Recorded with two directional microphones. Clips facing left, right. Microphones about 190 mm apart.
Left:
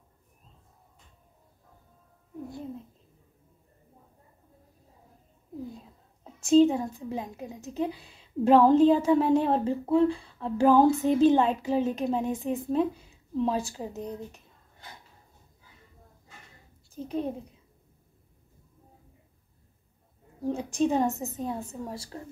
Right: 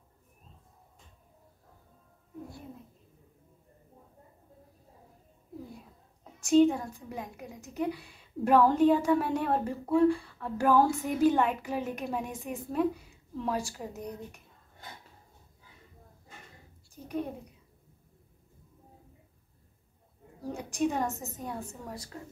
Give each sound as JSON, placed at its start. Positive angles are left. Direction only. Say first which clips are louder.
{"t": 6.4, "sound": "a woman's voice", "louder": "left 3 dB", "side_deg": 25}
{"t": 16.9, "sound": "a woman's voice", "louder": "left 4 dB", "side_deg": 25}
{"t": 20.4, "sound": "a woman's voice", "louder": "left 4 dB", "side_deg": 25}